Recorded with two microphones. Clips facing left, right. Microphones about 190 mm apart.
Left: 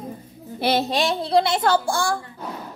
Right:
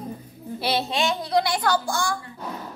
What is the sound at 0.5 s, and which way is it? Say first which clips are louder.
Speech: left 4 dB; 50° left (ahead or behind).